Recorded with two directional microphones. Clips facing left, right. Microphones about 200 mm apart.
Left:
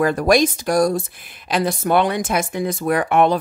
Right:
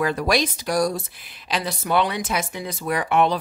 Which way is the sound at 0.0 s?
50° left (ahead or behind).